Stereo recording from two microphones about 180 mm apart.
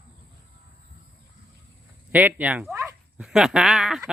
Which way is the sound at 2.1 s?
10° right (ahead or behind).